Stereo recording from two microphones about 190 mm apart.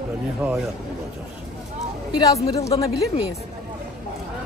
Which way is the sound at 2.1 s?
20° left (ahead or behind).